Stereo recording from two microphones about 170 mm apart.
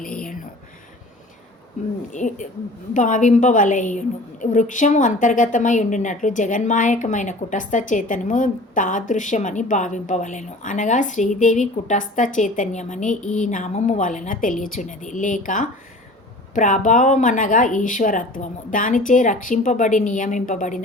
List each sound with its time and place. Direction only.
2.1 s a woman's voice: 45° left (ahead or behind)